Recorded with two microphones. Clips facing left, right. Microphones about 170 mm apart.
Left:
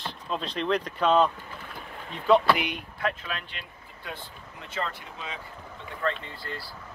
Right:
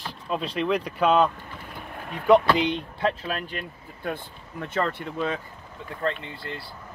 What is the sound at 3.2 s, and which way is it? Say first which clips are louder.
Speech: right 6 dB; 45° right (ahead or behind).